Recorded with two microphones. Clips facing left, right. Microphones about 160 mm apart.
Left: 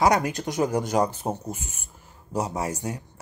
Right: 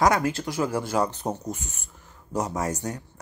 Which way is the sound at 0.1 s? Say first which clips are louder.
Left 1 dB; 20° left (ahead or behind).